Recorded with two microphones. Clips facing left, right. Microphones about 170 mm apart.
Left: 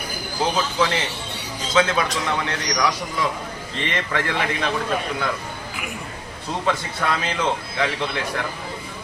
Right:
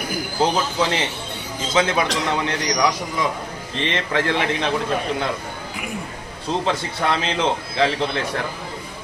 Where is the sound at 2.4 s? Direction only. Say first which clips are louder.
Right 3 dB; 20° right (ahead or behind).